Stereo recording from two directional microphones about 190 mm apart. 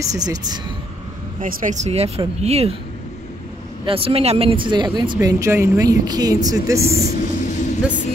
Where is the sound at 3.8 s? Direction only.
30° right (ahead or behind).